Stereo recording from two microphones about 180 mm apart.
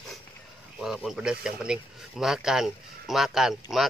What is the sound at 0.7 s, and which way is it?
Speech, centre (ahead or behind).